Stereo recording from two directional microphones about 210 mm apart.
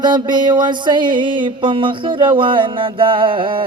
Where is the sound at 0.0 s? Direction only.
20° right (ahead or behind).